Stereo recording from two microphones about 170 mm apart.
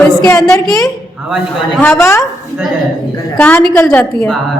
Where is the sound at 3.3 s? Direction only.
10° left (ahead or behind).